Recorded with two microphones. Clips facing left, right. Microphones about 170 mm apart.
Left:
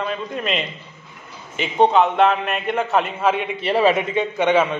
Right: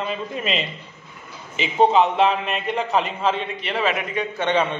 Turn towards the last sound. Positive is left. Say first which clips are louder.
# left 4 dB
turn(degrees=10)  # may be behind; listen again after turning